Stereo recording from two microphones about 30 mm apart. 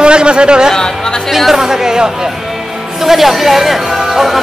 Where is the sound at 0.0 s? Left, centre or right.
Right.